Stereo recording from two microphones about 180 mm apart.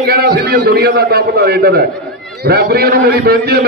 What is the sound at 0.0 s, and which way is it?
A man's voice, 60° right (ahead or behind).